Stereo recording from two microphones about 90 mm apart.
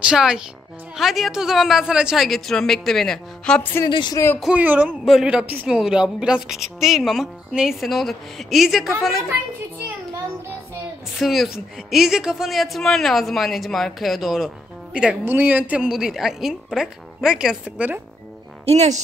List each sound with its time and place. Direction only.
0.0 s speech: 10° right (ahead or behind); by 3.6 s 5° left (ahead or behind)
3.9 s speech: 60° left (ahead or behind)
4.6 s speech: 15° right (ahead or behind)
5.0 s speech: 5° right (ahead or behind)
11.1 s speech: 5° right (ahead or behind)
15.2 s speech: 20° right (ahead or behind)
15.9 s speech: 5° right (ahead or behind)
18.7 s a woman's voice: 90° right